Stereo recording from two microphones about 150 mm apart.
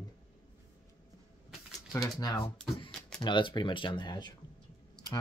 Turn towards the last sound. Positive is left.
turn(degrees=30)  # may be behind; listen again after turning